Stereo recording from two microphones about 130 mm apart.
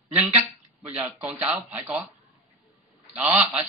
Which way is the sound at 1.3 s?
10° right (ahead or behind).